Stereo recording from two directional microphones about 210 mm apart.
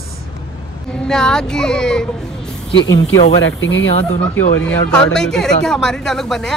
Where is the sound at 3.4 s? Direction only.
65° left (ahead or behind).